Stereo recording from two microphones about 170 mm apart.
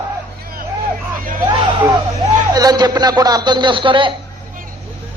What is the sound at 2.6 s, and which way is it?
A man's voice, 20° right (ahead or behind).